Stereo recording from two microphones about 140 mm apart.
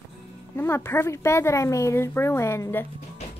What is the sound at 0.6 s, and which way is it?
A woman's voice, 20° left (ahead or behind).